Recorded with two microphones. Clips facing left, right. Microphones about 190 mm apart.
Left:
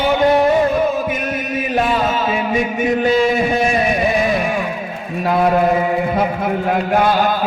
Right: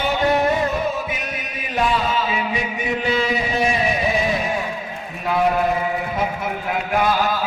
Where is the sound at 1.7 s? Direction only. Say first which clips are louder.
Left 2 dB; 50° left (ahead or behind).